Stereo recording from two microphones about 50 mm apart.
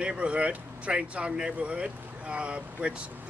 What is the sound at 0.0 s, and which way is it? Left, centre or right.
Speech, right.